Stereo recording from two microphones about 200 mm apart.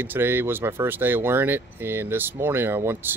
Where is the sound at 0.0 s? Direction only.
10° right (ahead or behind).